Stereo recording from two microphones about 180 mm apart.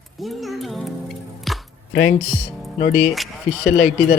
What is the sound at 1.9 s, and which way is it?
Speech, 60° left (ahead or behind).